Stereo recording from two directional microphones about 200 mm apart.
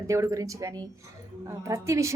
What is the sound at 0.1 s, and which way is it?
A woman's voice, 15° right (ahead or behind).